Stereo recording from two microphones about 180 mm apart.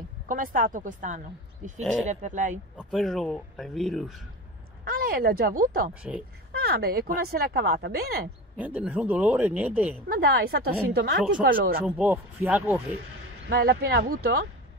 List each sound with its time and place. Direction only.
0.3 s speech: 50° right (ahead or behind)
1.8 s speech: centre (ahead or behind)
2.0 s speech: 45° right (ahead or behind)
2.8 s speech: centre (ahead or behind)
4.8 s speech: 55° right (ahead or behind)
8.5 s speech: 10° right (ahead or behind)
10.0 s speech: 55° right (ahead or behind)
12.4 s speech: 10° right (ahead or behind)
13.5 s speech: 65° right (ahead or behind)